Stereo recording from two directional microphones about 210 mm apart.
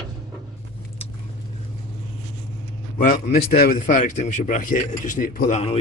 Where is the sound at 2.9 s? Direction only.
45° left (ahead or behind).